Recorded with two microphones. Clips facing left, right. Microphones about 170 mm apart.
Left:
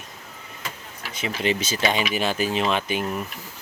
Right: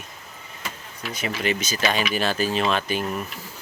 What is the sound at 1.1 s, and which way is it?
Speech, 25° left (ahead or behind).